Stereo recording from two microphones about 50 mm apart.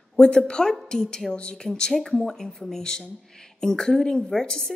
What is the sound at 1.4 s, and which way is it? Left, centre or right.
Speech, left.